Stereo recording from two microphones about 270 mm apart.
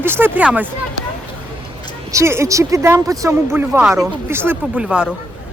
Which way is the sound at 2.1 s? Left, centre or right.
Centre.